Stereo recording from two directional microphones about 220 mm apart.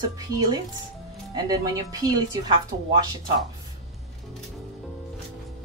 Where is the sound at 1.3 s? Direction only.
15° right (ahead or behind).